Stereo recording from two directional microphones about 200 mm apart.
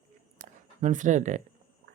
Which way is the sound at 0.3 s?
40° right (ahead or behind).